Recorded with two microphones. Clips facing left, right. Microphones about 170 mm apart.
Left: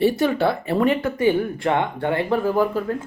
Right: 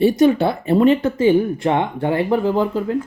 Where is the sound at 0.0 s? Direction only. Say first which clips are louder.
Right 4 dB; 20° right (ahead or behind).